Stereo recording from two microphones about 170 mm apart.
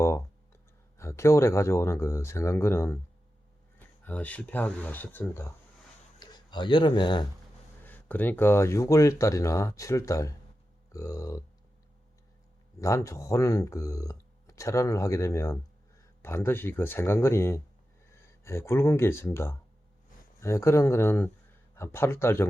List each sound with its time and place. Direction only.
0.9 s speech: 15° left (ahead or behind)
6.1 s speech: 25° left (ahead or behind)
7.9 s speech: 10° left (ahead or behind)
12.8 s speech: 20° left (ahead or behind)